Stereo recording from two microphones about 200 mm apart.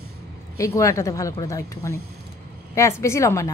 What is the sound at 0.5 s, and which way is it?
A woman's voice, 15° left (ahead or behind).